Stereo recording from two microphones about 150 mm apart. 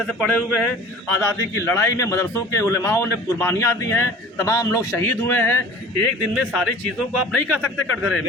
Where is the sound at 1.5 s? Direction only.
20° left (ahead or behind).